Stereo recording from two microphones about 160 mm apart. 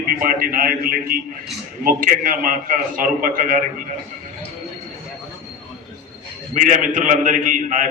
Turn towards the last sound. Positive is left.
turn(degrees=-50)  # may be behind; listen again after turning